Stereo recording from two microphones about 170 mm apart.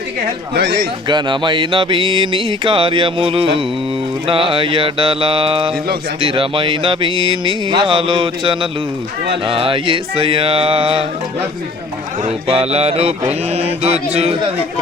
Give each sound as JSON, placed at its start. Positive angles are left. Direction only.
{"t": 0.5, "sound": "speech", "side_deg": -70}
{"t": 1.0, "sound": "a sound", "side_deg": -30}
{"t": 4.3, "sound": "mantra", "side_deg": -30}
{"t": 6.1, "sound": "a sound", "side_deg": -35}
{"t": 9.5, "sound": "mantra", "side_deg": -30}
{"t": 12.5, "sound": "mantra", "side_deg": -35}